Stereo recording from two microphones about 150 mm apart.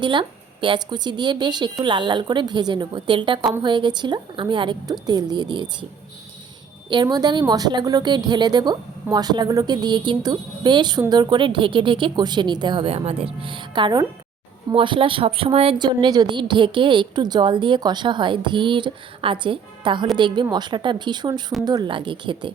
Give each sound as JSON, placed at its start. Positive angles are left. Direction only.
{"t": 0.0, "sound": "speech", "side_deg": -30}
{"t": 6.9, "sound": "a woman's voice", "side_deg": -30}